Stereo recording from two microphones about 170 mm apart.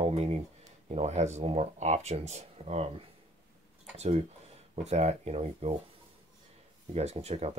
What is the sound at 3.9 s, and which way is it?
Speech, 40° right (ahead or behind).